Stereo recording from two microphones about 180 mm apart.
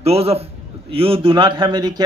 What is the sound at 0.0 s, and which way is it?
A man's voice, 35° right (ahead or behind).